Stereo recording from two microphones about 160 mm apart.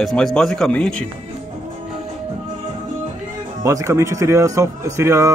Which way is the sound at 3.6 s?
20° right (ahead or behind).